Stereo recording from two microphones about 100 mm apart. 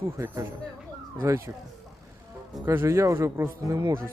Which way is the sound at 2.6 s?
25° right (ahead or behind).